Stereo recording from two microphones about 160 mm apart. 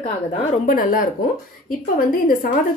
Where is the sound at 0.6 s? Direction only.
55° left (ahead or behind).